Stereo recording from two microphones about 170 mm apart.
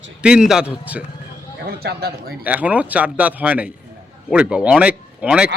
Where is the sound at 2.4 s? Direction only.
10° right (ahead or behind).